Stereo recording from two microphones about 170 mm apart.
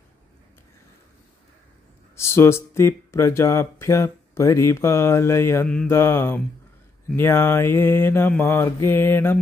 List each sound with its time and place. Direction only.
2.1 s speech: 15° left (ahead or behind)